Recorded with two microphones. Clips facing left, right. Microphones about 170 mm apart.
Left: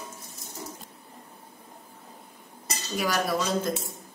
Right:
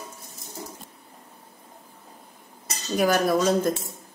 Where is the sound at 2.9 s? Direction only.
50° right (ahead or behind).